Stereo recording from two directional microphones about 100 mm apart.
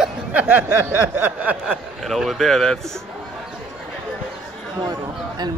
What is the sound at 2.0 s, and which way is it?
Speech, centre (ahead or behind).